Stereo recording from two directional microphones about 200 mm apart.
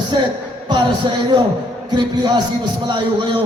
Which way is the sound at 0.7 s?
20° right (ahead or behind).